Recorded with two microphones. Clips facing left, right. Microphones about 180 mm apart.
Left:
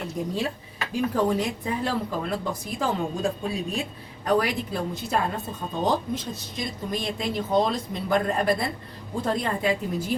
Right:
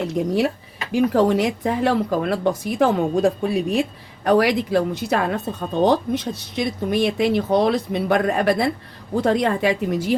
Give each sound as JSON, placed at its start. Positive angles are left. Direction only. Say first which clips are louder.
{"t": 0.1, "sound": "speech", "louder": "right 7 dB", "side_deg": -75}
{"t": 0.9, "sound": "speech", "louder": "right 7 dB", "side_deg": -90}
{"t": 4.2, "sound": "speech", "louder": "right 7 dB", "side_deg": -85}